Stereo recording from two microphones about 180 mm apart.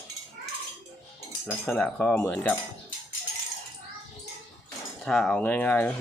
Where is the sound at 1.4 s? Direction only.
5° left (ahead or behind).